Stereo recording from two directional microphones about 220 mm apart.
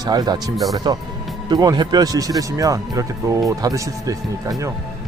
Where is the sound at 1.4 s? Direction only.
20° right (ahead or behind).